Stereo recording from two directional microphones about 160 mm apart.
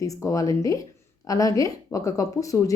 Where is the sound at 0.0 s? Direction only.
20° left (ahead or behind).